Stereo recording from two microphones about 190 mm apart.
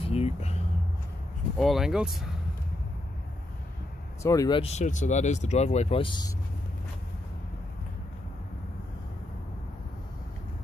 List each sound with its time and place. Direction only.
0.0 s speech: 30° left (ahead or behind)
1.6 s speech: centre (ahead or behind)
4.2 s speech: 15° left (ahead or behind)